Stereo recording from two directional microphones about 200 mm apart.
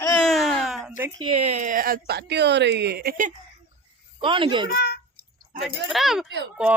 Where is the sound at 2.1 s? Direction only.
55° right (ahead or behind).